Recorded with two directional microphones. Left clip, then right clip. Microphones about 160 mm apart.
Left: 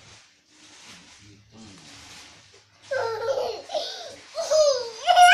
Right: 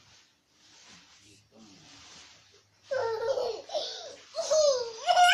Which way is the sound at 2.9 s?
5° right (ahead or behind).